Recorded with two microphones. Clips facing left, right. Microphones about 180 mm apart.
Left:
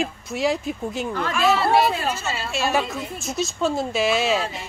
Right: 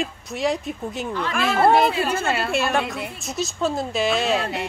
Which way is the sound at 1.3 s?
50° right (ahead or behind).